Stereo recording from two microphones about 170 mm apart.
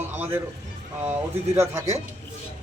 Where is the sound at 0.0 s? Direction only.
10° right (ahead or behind).